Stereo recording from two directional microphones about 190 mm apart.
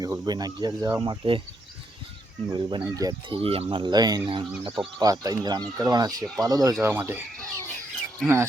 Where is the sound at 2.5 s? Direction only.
25° right (ahead or behind).